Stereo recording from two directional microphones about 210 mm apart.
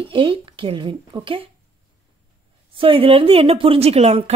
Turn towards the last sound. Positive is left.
turn(degrees=-30)  # may be behind; listen again after turning